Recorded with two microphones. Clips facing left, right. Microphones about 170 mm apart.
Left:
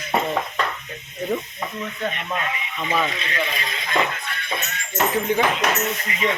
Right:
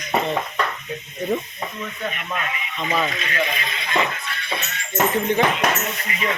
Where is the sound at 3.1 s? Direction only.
40° left (ahead or behind).